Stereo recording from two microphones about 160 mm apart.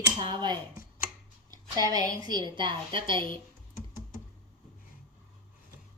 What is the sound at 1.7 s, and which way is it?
A woman's voice, 25° right (ahead or behind).